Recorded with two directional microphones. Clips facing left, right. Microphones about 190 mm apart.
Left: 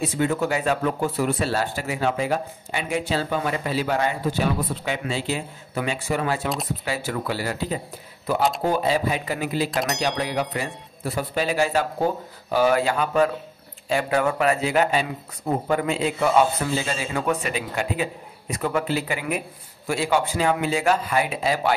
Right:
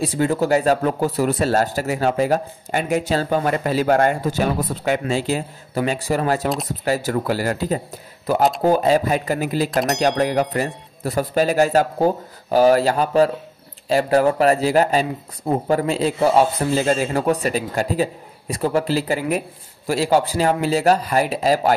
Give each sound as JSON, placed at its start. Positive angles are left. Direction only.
{"t": 0.0, "sound": "speech", "side_deg": -35}
{"t": 16.8, "sound": "speech", "side_deg": -45}